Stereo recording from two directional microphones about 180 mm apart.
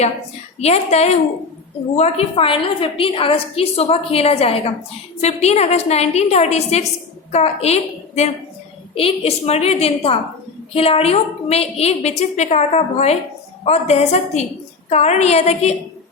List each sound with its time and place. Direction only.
0.6 s a woman's voice: 35° left (ahead or behind)